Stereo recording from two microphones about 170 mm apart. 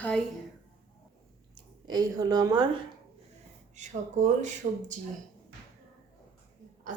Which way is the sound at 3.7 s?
45° right (ahead or behind).